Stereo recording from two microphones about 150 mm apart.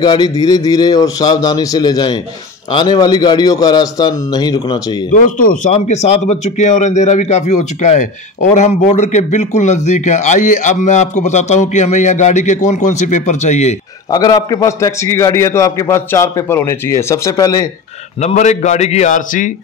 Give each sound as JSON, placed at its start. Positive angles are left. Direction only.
{"t": 0.0, "sound": "a man's voice", "side_deg": 30}
{"t": 5.1, "sound": "speech", "side_deg": 60}
{"t": 5.7, "sound": "speech", "side_deg": 45}
{"t": 14.1, "sound": "a man's voice", "side_deg": 25}
{"t": 18.2, "sound": "speech", "side_deg": 50}